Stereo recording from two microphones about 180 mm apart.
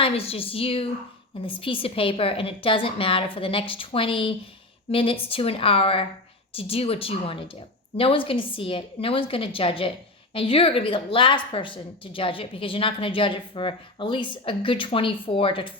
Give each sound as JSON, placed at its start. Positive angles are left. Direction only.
{"t": 0.0, "sound": "a woman's voice", "side_deg": 30}